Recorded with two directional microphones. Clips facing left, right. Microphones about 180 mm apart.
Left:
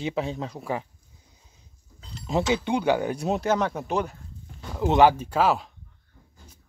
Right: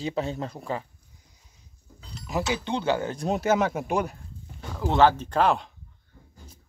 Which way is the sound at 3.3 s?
5° right (ahead or behind).